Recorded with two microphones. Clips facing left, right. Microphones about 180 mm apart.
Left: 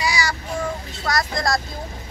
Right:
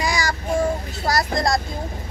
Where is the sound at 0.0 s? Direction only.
50° right (ahead or behind).